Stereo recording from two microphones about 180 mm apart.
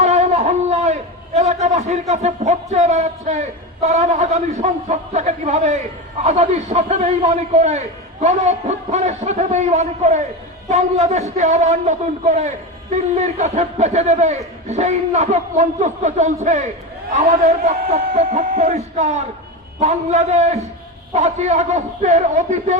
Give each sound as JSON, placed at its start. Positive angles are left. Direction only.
{"t": 0.0, "sound": "a sound", "side_deg": -35}
{"t": 1.4, "sound": "a man's voice", "side_deg": -40}
{"t": 18.1, "sound": "a man's voice", "side_deg": -40}